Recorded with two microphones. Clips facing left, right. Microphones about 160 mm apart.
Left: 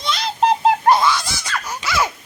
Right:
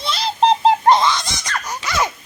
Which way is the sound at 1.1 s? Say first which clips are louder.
Even; 5° left (ahead or behind).